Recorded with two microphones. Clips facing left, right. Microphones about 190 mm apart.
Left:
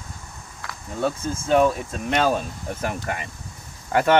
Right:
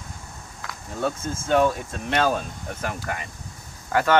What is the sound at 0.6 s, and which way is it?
Speech, 5° left (ahead or behind).